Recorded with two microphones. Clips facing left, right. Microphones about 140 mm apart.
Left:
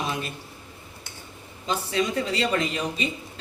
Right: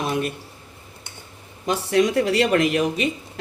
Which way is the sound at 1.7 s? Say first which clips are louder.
Right 6 dB; 70° right (ahead or behind).